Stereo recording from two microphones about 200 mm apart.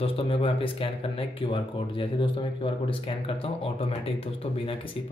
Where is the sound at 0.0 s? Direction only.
30° left (ahead or behind).